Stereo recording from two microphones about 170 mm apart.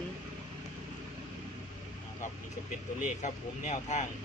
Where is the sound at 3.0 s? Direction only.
40° left (ahead or behind).